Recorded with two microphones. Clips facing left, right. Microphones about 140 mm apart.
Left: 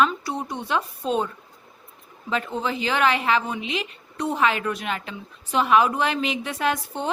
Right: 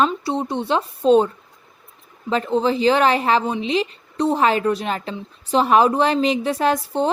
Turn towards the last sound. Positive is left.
turn(degrees=-35)  # may be behind; listen again after turning